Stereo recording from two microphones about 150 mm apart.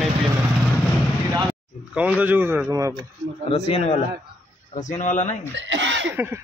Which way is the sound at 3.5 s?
40° left (ahead or behind).